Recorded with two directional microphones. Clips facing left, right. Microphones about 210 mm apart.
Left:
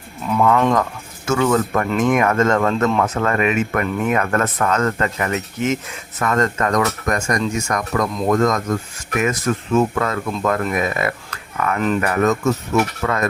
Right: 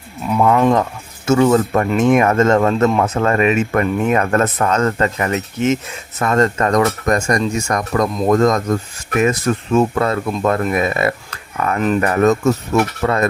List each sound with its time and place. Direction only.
0.3 s speech: 25° right (ahead or behind)